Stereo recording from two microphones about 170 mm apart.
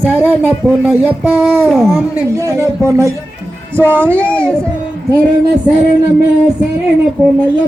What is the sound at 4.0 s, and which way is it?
Speech, 10° left (ahead or behind).